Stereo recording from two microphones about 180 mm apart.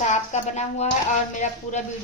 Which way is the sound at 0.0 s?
40° left (ahead or behind).